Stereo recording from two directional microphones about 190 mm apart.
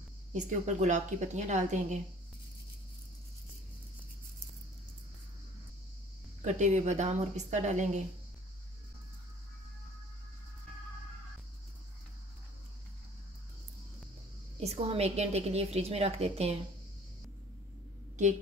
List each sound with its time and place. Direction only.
0.3 s a woman's voice: 40° right (ahead or behind)
6.4 s a woman's voice: 40° right (ahead or behind)
14.6 s a woman's voice: 35° right (ahead or behind)